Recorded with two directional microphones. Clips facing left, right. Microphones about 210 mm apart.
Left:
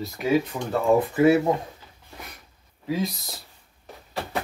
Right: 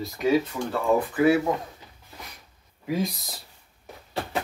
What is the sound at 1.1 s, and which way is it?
Speech, 25° left (ahead or behind).